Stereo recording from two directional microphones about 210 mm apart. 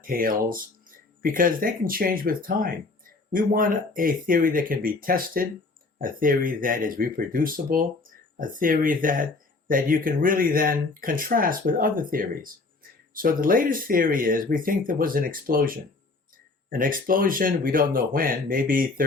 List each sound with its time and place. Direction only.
0.0 s speech: 40° right (ahead or behind)